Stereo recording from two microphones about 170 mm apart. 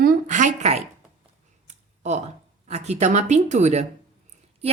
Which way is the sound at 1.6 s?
45° right (ahead or behind).